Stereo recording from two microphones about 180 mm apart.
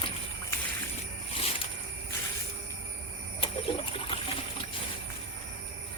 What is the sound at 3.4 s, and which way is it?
Trickle, 30° left (ahead or behind).